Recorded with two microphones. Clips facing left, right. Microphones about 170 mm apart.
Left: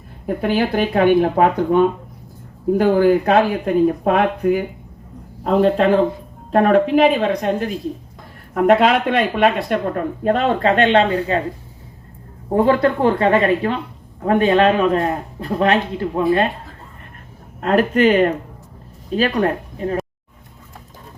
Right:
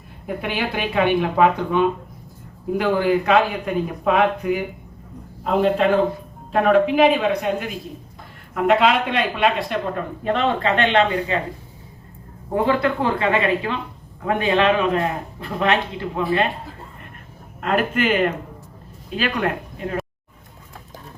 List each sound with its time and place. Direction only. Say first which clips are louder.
0.3 s a man's voice: left 7 dB; 40° left (ahead or behind)
12.6 s a man's voice: left 4 dB; 40° left (ahead or behind)
17.6 s a man's voice: left 6 dB; 40° left (ahead or behind)